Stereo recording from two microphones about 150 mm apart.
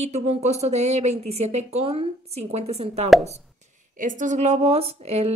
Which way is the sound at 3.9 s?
60° right (ahead or behind).